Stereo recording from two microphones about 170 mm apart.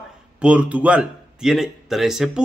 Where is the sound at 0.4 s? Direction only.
5° right (ahead or behind).